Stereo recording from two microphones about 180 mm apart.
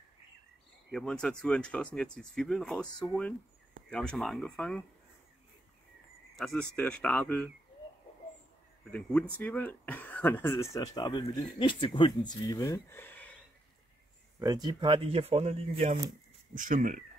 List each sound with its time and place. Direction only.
0.9 s speech: 5° left (ahead or behind)
6.3 s speech: 5° left (ahead or behind)
8.9 s speech: 10° left (ahead or behind)
14.4 s speech: 20° right (ahead or behind)
16.5 s speech: 45° right (ahead or behind)